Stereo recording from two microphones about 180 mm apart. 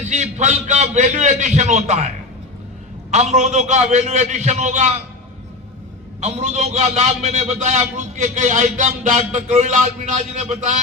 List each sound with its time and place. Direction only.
0.0 s a man's voice: 40° right (ahead or behind)
6.1 s a man's voice: 40° right (ahead or behind)